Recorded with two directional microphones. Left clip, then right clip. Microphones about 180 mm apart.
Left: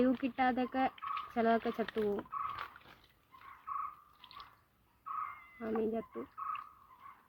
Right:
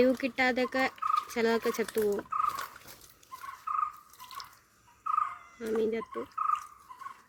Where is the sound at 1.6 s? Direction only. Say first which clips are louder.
Right 6 dB; 5° right (ahead or behind).